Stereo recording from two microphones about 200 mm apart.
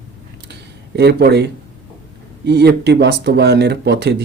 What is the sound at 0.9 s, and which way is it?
Speech, 55° right (ahead or behind).